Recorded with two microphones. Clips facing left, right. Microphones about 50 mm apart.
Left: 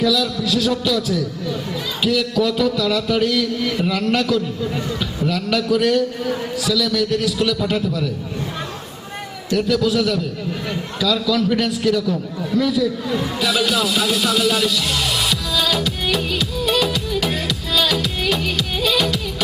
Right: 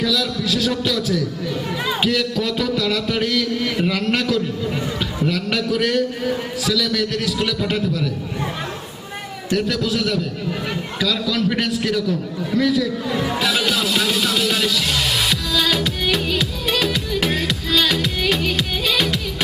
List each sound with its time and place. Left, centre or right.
0.0 s a man's voice: centre
7.3 s a man's voice: centre
9.6 s a man's voice: centre
11.3 s a man's voice: centre
11.6 s a man's voice: centre
15.5 s music: centre
17.2 s music: centre